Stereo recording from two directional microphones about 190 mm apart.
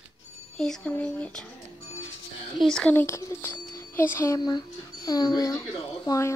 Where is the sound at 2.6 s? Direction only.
5° left (ahead or behind).